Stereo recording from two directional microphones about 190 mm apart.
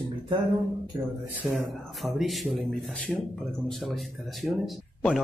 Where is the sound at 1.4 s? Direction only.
5° right (ahead or behind).